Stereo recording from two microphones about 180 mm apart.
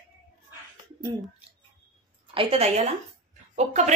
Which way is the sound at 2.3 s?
35° right (ahead or behind).